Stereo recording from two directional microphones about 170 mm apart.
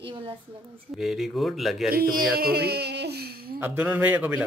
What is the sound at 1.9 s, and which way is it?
Speech, 60° right (ahead or behind).